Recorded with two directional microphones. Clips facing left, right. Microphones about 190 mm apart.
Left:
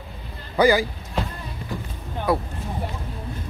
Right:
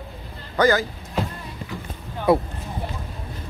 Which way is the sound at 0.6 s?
10° left (ahead or behind).